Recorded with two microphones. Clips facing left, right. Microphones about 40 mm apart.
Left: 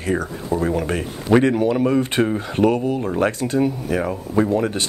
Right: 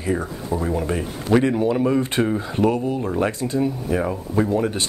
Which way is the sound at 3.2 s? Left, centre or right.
Left.